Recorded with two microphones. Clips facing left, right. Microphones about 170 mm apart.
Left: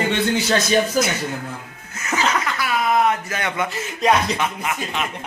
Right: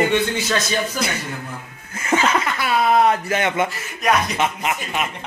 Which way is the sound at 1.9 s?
30° right (ahead or behind).